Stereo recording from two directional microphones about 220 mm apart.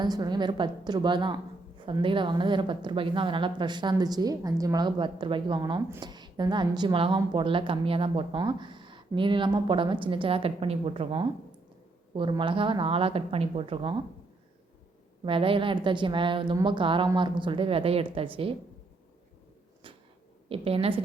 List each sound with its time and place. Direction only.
0.0 s a woman's voice: 20° right (ahead or behind)
15.2 s a woman's voice: 25° right (ahead or behind)
20.5 s a woman's voice: 25° right (ahead or behind)